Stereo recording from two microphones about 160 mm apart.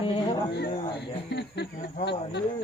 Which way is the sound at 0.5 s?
90° left.